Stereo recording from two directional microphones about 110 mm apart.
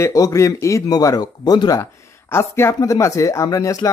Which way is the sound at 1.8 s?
25° left (ahead or behind).